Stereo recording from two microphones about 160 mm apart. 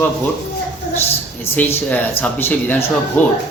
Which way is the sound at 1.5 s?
10° left (ahead or behind).